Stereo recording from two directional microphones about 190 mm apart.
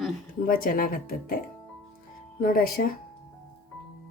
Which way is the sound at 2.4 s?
50° left (ahead or behind).